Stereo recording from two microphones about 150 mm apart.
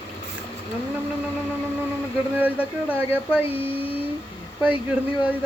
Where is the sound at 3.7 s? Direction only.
40° left (ahead or behind).